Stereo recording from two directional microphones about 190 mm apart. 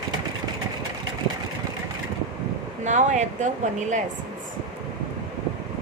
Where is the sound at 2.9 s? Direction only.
40° right (ahead or behind).